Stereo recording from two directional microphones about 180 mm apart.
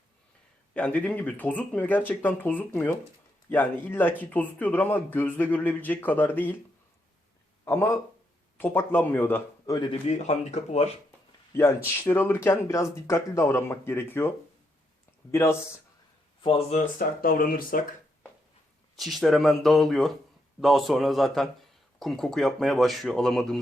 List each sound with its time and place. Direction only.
0.7 s speech: 5° left (ahead or behind)
7.6 s speech: 15° left (ahead or behind); by 10.8 s 40° left (ahead or behind)
11.5 s speech: 15° left (ahead or behind)
16.4 s speech: 30° left (ahead or behind)
17.0 s speech: 50° left (ahead or behind)
18.9 s speech: centre (ahead or behind)